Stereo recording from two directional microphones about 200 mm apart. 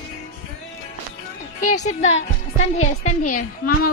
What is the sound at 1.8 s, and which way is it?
A woman's voice, 35° left (ahead or behind).